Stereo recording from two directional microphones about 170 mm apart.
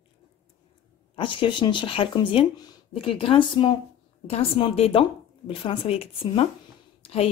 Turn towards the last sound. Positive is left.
turn(degrees=35)  # may be behind; listen again after turning